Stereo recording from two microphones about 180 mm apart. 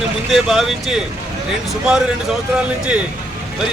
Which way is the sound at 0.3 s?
Centre (ahead or behind).